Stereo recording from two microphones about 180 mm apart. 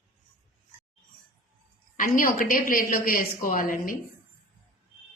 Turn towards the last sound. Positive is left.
turn(degrees=50)  # may be behind; listen again after turning